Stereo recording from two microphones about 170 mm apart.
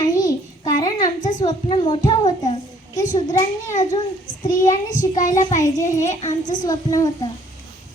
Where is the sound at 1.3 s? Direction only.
45° left (ahead or behind); by 3.1 s 20° left (ahead or behind).